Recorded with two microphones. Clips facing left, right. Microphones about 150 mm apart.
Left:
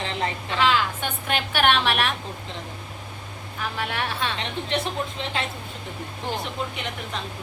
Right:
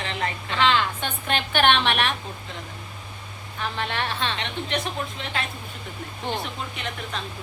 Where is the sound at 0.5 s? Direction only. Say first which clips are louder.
Even; 5° left (ahead or behind).